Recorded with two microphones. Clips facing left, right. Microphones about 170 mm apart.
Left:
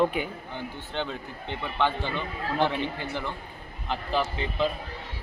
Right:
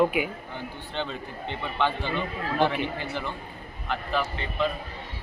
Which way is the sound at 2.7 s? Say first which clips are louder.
Right 1 dB; 15° right (ahead or behind).